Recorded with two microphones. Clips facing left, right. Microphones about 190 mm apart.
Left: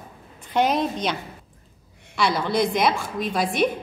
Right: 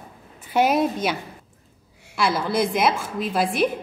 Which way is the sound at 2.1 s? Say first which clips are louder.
Even; 5° right (ahead or behind).